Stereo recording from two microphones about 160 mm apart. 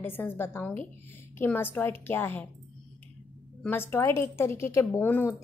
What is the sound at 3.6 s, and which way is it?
A woman's voice, 15° left (ahead or behind).